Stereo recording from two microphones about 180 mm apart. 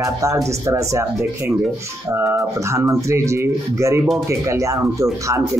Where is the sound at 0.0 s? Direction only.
15° right (ahead or behind).